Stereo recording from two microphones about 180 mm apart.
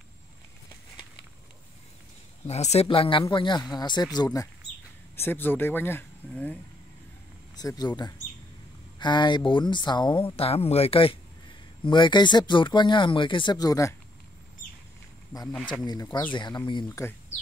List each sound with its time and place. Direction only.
2.4 s speech: 35° left (ahead or behind); by 6.6 s 10° left (ahead or behind)
7.5 s speech: 20° left (ahead or behind)
15.8 s speech: 20° left (ahead or behind)